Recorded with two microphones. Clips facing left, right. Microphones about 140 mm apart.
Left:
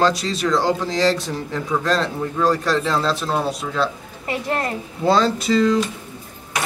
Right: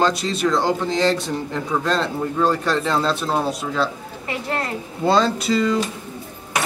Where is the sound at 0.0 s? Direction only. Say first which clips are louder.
Even; centre (ahead or behind).